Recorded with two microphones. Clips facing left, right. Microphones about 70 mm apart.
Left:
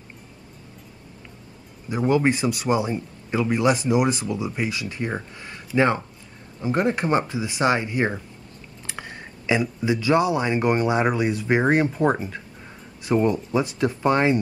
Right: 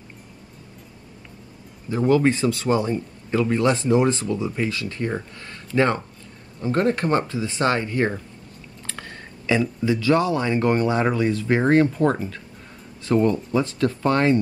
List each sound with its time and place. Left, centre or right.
1.9 s a man's voice: centre